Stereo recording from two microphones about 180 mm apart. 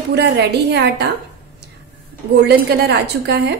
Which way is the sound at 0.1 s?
70° right (ahead or behind).